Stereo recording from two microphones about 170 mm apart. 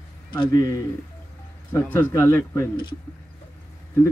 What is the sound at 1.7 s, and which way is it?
Speech, 10° left (ahead or behind).